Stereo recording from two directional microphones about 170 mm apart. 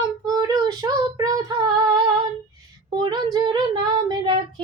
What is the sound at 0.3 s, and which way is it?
Child singing, 20° right (ahead or behind).